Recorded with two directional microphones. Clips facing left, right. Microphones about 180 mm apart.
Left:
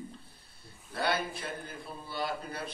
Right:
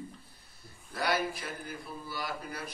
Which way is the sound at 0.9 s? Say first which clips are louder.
Right 1 dB; 25° left (ahead or behind).